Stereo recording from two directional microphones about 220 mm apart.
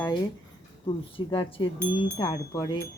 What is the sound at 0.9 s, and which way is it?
Speech, 20° left (ahead or behind).